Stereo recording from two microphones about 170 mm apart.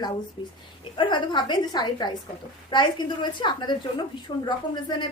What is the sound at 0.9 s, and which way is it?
A woman's voice, 30° left (ahead or behind).